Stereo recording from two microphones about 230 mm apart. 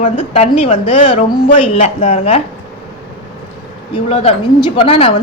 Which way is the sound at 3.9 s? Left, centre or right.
Left.